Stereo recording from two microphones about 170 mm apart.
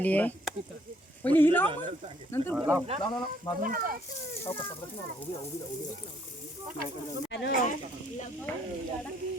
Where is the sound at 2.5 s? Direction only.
10° right (ahead or behind).